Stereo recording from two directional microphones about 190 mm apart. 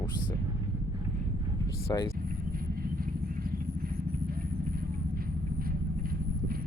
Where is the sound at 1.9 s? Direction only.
15° left (ahead or behind).